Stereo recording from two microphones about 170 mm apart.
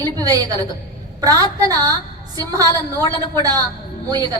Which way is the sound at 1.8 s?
20° right (ahead or behind).